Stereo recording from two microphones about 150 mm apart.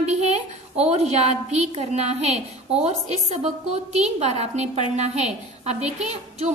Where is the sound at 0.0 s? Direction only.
50° right (ahead or behind).